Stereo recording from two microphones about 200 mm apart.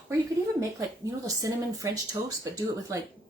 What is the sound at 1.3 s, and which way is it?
Speech, 15° right (ahead or behind).